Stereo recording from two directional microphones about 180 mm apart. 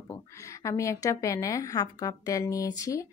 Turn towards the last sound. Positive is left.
turn(degrees=20)  # may be behind; listen again after turning